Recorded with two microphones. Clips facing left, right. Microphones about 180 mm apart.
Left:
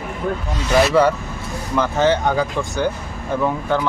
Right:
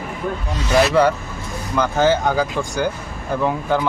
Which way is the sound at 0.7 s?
Centre (ahead or behind).